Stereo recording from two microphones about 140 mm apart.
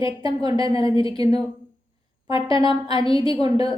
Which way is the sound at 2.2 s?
40° left (ahead or behind).